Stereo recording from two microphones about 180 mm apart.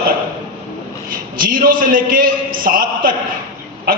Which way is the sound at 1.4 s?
55° right (ahead or behind).